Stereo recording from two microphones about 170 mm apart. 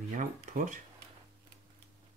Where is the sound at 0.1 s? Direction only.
50° right (ahead or behind).